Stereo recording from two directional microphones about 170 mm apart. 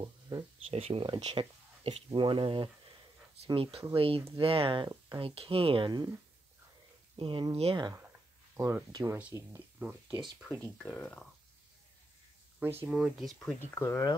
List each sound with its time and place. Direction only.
0.0 s speech: 20° right (ahead or behind)
0.7 s speech: 35° right (ahead or behind)
7.2 s speech: 30° right (ahead or behind)
8.5 s speech: 15° right (ahead or behind)
10.6 s speech: 10° left (ahead or behind)
12.5 s speech: 15° right (ahead or behind)
12.9 s speech: centre (ahead or behind)
13.7 s speech: 15° left (ahead or behind)